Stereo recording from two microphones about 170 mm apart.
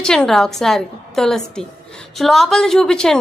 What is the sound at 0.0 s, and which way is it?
A woman's voice, 5° left (ahead or behind).